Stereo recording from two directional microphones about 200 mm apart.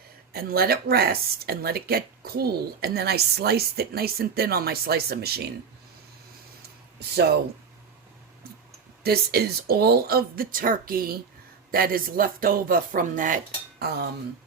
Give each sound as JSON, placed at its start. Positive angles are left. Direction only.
{"t": 0.3, "sound": "speech", "side_deg": -50}
{"t": 9.0, "sound": "speech", "side_deg": -50}